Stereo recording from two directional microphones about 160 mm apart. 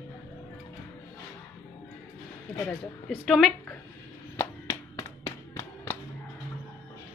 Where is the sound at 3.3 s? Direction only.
Centre (ahead or behind).